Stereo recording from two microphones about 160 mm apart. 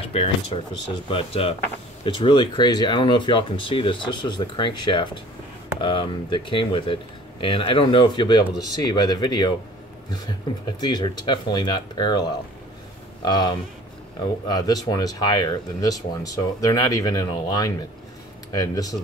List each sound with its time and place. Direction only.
0.5 s speech: 40° left (ahead or behind)
10.8 s speech: 25° left (ahead or behind)